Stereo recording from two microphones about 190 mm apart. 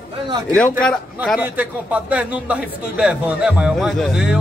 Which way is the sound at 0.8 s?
5° left (ahead or behind).